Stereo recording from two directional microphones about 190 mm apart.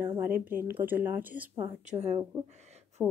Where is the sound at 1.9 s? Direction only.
35° right (ahead or behind).